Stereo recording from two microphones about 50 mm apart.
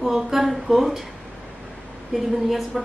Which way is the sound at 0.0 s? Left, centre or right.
Centre.